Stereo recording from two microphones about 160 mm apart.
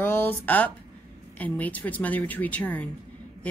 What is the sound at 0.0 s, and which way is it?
Speech, 15° left (ahead or behind).